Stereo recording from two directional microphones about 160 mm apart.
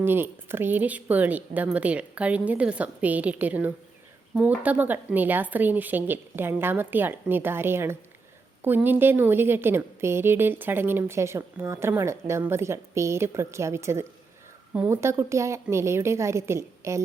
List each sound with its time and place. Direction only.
0.0 s a woman's voice: 15° right (ahead or behind)